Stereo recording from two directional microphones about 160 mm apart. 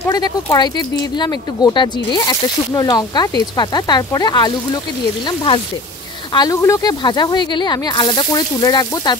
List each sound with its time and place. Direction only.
0.0 s speech: 20° left (ahead or behind)